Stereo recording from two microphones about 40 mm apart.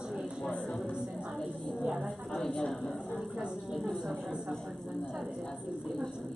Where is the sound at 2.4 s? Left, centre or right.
Centre.